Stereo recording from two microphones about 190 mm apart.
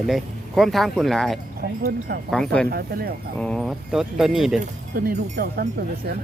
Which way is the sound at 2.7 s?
55° right (ahead or behind).